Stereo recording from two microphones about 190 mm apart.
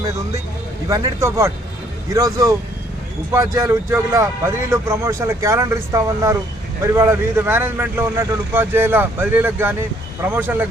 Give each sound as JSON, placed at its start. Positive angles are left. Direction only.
{"t": 0.9, "sound": "speech", "side_deg": -15}